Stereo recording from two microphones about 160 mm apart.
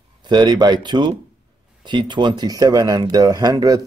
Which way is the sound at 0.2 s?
25° right (ahead or behind).